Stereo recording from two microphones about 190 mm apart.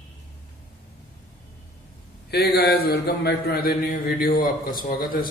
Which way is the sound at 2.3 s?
55° left (ahead or behind).